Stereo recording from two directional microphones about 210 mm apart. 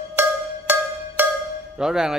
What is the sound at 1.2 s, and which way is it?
Music, 10° right (ahead or behind).